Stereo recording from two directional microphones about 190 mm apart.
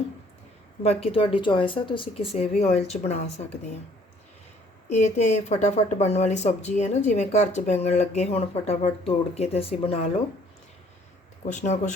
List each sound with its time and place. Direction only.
1.0 s speech: 30° left (ahead or behind)
4.9 s speech: 35° left (ahead or behind)
11.4 s speech: 40° left (ahead or behind)